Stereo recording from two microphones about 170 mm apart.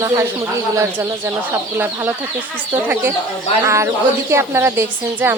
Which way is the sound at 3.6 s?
15° right (ahead or behind).